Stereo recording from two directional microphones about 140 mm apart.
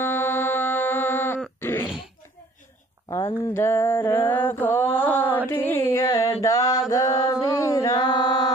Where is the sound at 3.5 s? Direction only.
15° left (ahead or behind).